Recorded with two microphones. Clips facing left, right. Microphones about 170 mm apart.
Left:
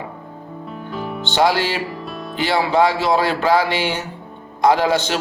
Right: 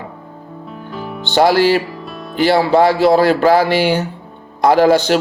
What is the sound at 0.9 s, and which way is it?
Music, centre (ahead or behind).